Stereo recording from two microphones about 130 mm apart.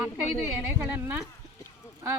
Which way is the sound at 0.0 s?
15° right (ahead or behind).